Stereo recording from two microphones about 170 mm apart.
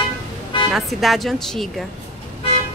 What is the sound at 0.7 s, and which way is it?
Speech, centre (ahead or behind).